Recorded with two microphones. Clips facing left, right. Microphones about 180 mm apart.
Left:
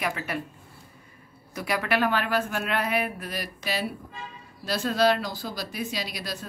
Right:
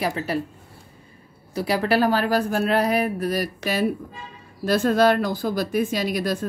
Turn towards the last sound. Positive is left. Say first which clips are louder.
# right 10 dB
turn(degrees=-50)  # may be behind; listen again after turning